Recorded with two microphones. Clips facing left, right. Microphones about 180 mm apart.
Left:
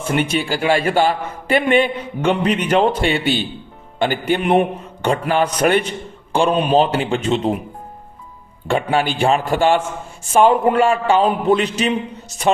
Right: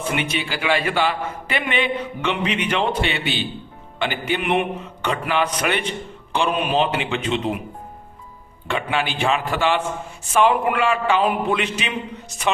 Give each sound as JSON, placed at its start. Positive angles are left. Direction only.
{"t": 0.0, "sound": "a man's voice", "side_deg": 45}
{"t": 6.5, "sound": "a man's voice", "side_deg": 30}
{"t": 8.6, "sound": "a man's voice", "side_deg": 45}
{"t": 10.5, "sound": "a man's voice", "side_deg": 30}
{"t": 10.8, "sound": "a man's voice", "side_deg": 45}